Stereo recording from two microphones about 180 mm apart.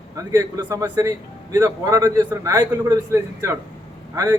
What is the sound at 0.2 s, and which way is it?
A man's voice, 20° right (ahead or behind).